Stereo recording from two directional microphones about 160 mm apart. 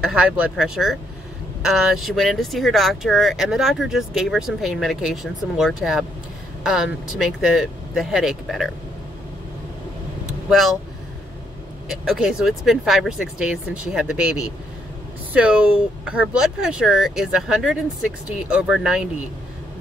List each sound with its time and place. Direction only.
0.0 s speech: 5° right (ahead or behind)
10.5 s speech: centre (ahead or behind)
11.9 s speech: 5° right (ahead or behind)